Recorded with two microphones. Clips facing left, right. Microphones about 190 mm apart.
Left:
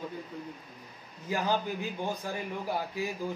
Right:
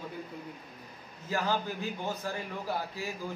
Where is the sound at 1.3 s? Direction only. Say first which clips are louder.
Left 1 dB; 15° left (ahead or behind).